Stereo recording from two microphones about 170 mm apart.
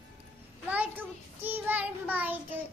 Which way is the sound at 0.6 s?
10° right (ahead or behind).